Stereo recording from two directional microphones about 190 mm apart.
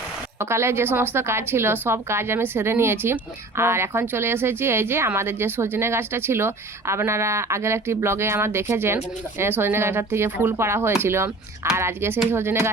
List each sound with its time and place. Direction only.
0.3 s speech: 15° right (ahead or behind)